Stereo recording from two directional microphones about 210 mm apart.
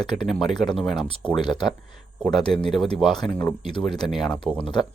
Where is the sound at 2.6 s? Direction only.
Centre (ahead or behind).